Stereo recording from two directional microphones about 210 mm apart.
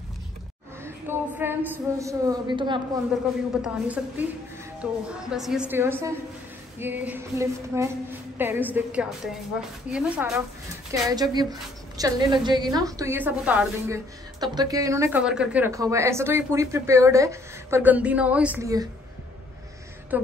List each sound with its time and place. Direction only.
0.8 s a woman's voice: 10° right (ahead or behind)
3.6 s a woman's voice: 5° right (ahead or behind)
10.9 s a woman's voice: 20° right (ahead or behind)